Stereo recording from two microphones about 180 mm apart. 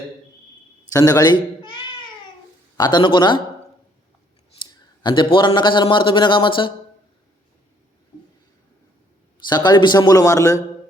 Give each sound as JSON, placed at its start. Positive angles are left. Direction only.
{"t": 0.9, "sound": "cat", "side_deg": 20}
{"t": 2.7, "sound": "speech", "side_deg": 25}
{"t": 5.0, "sound": "speech", "side_deg": 25}
{"t": 9.5, "sound": "speech", "side_deg": 25}